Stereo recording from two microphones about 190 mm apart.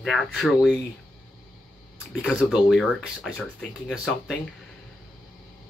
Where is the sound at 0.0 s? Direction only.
Centre (ahead or behind).